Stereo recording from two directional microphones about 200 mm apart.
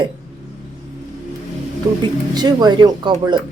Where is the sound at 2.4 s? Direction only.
20° right (ahead or behind).